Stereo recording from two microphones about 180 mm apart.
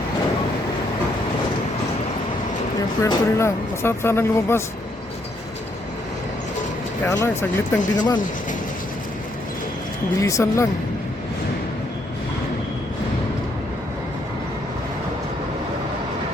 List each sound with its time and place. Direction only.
3.0 s speech: 15° left (ahead or behind)
7.0 s speech: 15° left (ahead or behind)
10.2 s speech: 15° left (ahead or behind)